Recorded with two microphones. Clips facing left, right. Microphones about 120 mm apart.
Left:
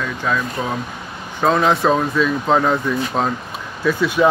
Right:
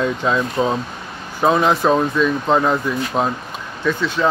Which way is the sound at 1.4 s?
5° right (ahead or behind).